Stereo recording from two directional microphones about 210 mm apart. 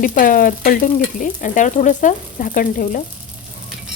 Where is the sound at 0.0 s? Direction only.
40° left (ahead or behind).